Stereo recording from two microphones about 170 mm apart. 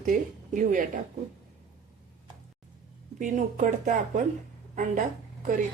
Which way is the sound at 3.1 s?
45° right (ahead or behind).